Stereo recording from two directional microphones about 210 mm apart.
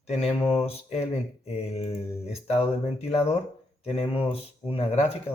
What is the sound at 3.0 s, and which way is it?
Speech, 30° left (ahead or behind).